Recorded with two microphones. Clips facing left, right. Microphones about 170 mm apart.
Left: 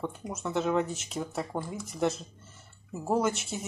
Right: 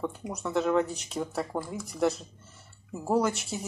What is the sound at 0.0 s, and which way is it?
Speech, centre (ahead or behind).